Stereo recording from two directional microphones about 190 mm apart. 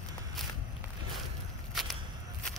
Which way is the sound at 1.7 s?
Centre (ahead or behind).